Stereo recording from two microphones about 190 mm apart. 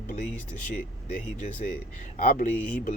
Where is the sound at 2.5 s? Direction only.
5° left (ahead or behind).